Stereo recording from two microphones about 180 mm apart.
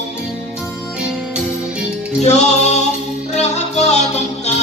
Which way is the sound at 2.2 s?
40° left (ahead or behind).